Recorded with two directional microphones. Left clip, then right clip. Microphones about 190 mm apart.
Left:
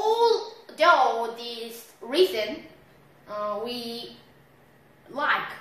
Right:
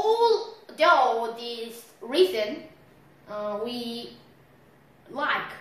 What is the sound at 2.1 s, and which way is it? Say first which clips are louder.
A woman's voice: even; 5° left (ahead or behind).